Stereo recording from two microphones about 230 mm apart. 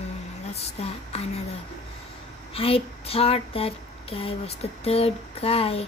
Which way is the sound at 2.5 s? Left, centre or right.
Left.